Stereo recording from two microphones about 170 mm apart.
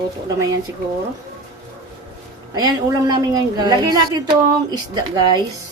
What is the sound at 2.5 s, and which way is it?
A woman's voice, 20° right (ahead or behind).